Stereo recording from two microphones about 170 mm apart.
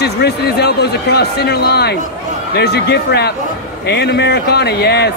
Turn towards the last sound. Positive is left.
turn(degrees=75)  # may be behind; listen again after turning